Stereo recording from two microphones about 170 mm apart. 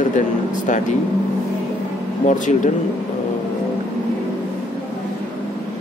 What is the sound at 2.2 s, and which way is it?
Speech, 45° left (ahead or behind).